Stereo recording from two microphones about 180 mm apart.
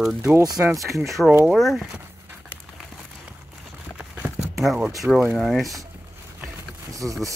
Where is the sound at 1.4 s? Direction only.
Centre (ahead or behind).